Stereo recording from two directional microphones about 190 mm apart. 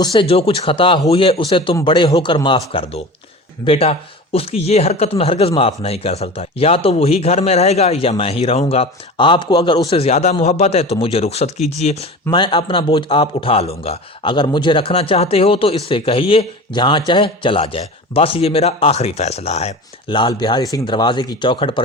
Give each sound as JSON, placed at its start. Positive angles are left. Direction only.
{"t": 0.0, "sound": "speech", "side_deg": 30}